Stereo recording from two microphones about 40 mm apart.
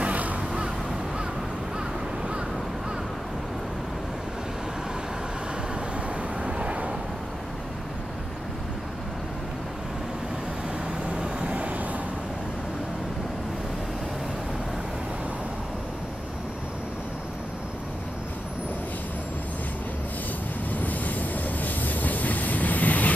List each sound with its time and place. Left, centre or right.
0.0 s crow: right
6.4 s vehicle: right
11.1 s vehicle: right
11.5 s vehicle: right
20.7 s train: left